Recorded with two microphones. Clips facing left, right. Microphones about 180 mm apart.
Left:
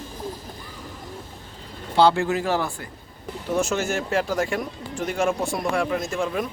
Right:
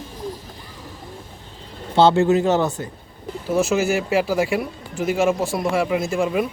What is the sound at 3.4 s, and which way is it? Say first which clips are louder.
Speech: right 5 dB; 5° right (ahead or behind).